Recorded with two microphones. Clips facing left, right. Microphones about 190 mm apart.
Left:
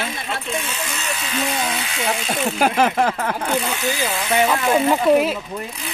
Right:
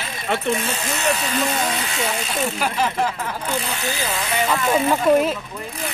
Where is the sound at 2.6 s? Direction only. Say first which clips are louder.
Left 6 dB; 55° left (ahead or behind).